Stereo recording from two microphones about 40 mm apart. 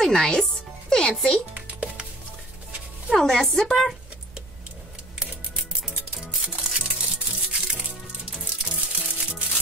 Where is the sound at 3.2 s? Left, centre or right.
Centre.